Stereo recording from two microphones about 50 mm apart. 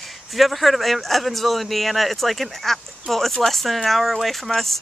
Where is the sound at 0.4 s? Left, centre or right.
Centre.